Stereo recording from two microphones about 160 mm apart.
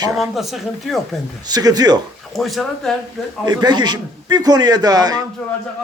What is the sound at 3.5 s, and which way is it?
A man's voice, 25° right (ahead or behind).